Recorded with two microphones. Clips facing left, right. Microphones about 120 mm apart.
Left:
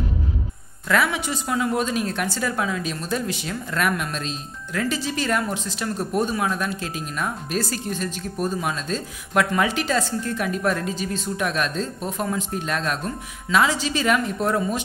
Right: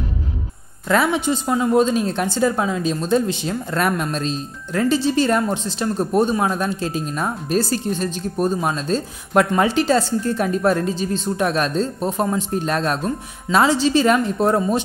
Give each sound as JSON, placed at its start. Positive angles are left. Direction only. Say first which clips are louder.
{"t": 0.8, "sound": "a woman's voice", "louder": "right 4 dB", "side_deg": -30}